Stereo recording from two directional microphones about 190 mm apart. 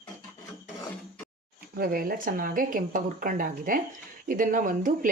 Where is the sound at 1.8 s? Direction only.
50° right (ahead or behind).